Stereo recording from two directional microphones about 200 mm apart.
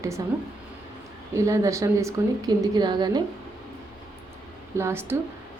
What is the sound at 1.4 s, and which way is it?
A woman's voice, 15° right (ahead or behind).